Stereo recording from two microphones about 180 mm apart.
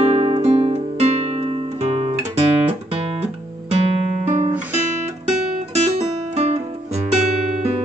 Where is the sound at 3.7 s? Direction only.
40° right (ahead or behind).